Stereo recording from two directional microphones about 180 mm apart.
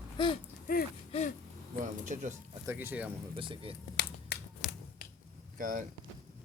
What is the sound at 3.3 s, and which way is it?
Speech, 30° right (ahead or behind).